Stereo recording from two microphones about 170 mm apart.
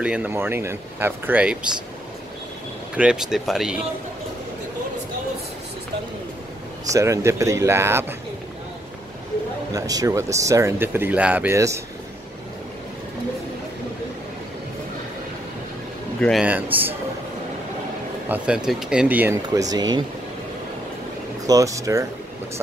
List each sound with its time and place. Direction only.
0.0 s speech: 5° right (ahead or behind)
3.0 s speech: 5° right (ahead or behind)
6.9 s speech: 15° right (ahead or behind)
9.7 s speech: 20° right (ahead or behind)
16.2 s speech: centre (ahead or behind)
16.4 s speech: 10° right (ahead or behind)
18.3 s speech: 5° right (ahead or behind); by 20.0 s 25° right (ahead or behind)
21.5 s speech: 20° right (ahead or behind)